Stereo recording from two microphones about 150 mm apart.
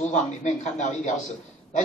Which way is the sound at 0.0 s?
50° left (ahead or behind).